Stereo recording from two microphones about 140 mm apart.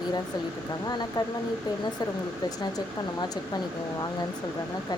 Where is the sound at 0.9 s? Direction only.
30° left (ahead or behind).